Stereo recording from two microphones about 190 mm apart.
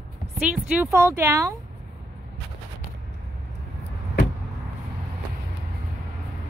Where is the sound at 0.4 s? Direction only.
5° right (ahead or behind).